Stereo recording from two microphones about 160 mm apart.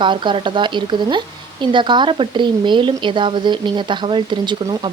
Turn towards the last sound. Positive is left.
turn(degrees=-30)  # may be behind; listen again after turning